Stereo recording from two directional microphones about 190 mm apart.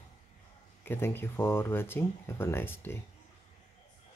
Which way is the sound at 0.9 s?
10° left (ahead or behind).